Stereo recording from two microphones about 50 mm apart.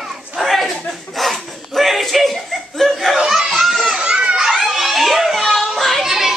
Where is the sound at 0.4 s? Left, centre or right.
Centre.